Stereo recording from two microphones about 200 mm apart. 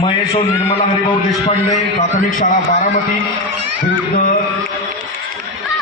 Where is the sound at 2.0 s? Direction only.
40° left (ahead or behind).